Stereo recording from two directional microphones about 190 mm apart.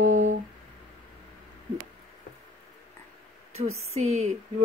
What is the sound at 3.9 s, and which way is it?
Speech, 35° right (ahead or behind).